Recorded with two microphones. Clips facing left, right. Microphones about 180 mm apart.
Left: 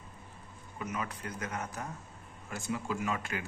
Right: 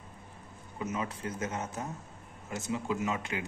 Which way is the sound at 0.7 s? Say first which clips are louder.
Right 3 dB; 25° right (ahead or behind).